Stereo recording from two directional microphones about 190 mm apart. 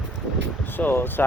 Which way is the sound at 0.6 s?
10° left (ahead or behind).